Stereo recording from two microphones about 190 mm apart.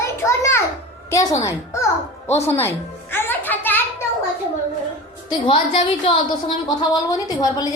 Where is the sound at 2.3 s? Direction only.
10° left (ahead or behind).